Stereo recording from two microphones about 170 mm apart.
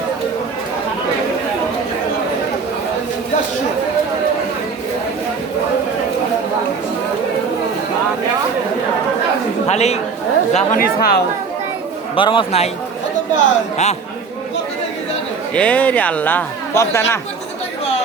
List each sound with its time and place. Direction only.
9.6 s speech: 40° left (ahead or behind)
10.5 s speech: 55° left (ahead or behind)
12.1 s speech: 30° left (ahead or behind)
15.5 s speech: 5° left (ahead or behind)